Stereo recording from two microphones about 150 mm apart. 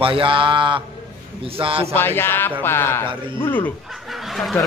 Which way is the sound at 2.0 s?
15° left (ahead or behind).